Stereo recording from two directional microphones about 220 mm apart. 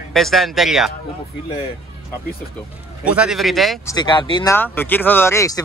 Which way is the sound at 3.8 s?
20° left (ahead or behind).